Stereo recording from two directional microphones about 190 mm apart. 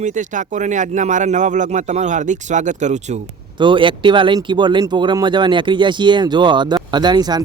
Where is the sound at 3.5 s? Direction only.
25° right (ahead or behind).